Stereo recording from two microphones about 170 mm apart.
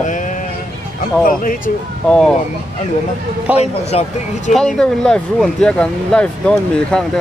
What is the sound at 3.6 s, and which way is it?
Speech, 40° left (ahead or behind).